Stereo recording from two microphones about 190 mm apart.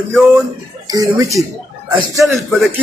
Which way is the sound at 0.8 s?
20° right (ahead or behind).